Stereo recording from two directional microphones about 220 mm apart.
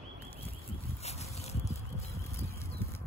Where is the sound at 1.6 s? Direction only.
15° left (ahead or behind).